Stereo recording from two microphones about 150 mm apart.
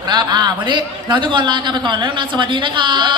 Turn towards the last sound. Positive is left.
turn(degrees=-30)  # may be behind; listen again after turning